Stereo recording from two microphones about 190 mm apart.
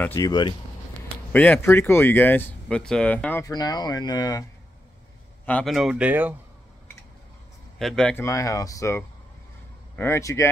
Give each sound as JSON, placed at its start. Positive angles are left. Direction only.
{"t": 0.0, "sound": "speech", "side_deg": 15}
{"t": 1.3, "sound": "speech", "side_deg": 10}
{"t": 5.4, "sound": "speech", "side_deg": 5}
{"t": 7.8, "sound": "speech", "side_deg": 5}